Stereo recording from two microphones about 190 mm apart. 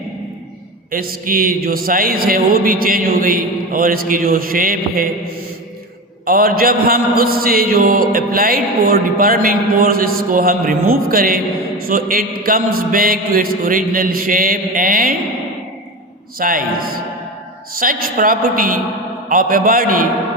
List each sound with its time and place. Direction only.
0.9 s a man's voice: 50° right (ahead or behind)
6.2 s a man's voice: 50° right (ahead or behind)
16.4 s a man's voice: 50° right (ahead or behind)